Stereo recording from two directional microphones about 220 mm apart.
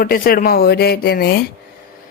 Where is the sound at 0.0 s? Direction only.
40° left (ahead or behind).